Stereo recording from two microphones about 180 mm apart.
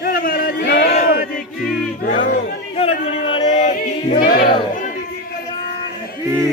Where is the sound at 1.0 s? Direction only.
55° left (ahead or behind).